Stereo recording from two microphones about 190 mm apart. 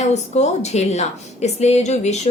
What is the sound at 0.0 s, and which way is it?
A woman's voice, 35° left (ahead or behind).